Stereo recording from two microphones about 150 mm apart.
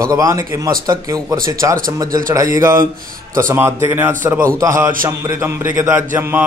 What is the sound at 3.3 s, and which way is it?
A man's voice, 15° right (ahead or behind).